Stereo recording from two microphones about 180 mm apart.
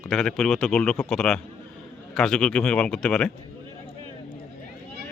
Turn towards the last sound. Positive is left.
turn(degrees=5)  # may be behind; listen again after turning